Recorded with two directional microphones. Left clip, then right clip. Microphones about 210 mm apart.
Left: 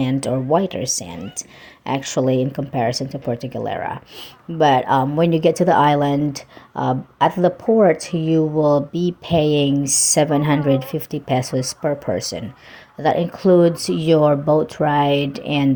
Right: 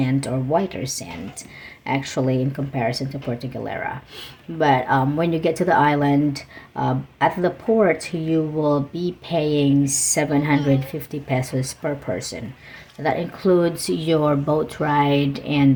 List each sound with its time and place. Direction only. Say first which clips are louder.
0.0 s speech: left 3 dB; 40° left (ahead or behind)